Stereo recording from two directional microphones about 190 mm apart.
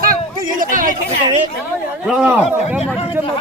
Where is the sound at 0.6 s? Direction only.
45° right (ahead or behind).